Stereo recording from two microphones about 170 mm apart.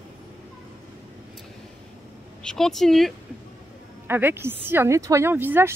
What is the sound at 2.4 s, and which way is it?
Speech, centre (ahead or behind).